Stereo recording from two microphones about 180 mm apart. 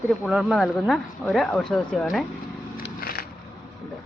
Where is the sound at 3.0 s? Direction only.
55° left (ahead or behind).